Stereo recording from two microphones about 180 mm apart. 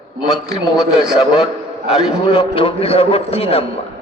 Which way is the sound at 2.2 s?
30° left (ahead or behind).